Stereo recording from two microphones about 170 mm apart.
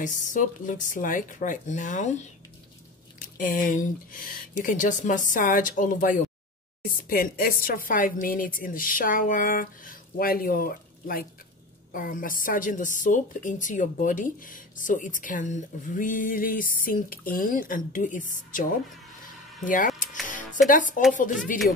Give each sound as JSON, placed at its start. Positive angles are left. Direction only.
{"t": 0.0, "sound": "a woman's voice", "side_deg": 50}
{"t": 3.3, "sound": "a woman's voice", "side_deg": 50}
{"t": 20.2, "sound": "music", "side_deg": 50}